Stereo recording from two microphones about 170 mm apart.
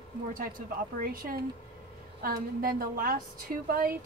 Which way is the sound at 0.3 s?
55° right (ahead or behind).